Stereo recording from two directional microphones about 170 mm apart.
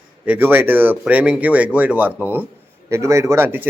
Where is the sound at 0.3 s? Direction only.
10° right (ahead or behind).